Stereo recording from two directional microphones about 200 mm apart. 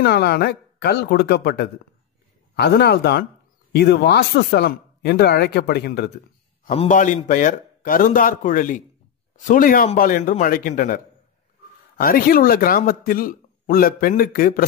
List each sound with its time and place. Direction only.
0.0 s a man's voice: 55° left (ahead or behind)
6.6 s a man's voice: 35° left (ahead or behind)
12.0 s a man's voice: 45° left (ahead or behind)